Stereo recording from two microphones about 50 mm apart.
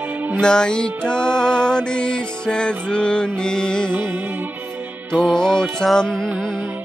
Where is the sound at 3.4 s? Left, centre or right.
Centre.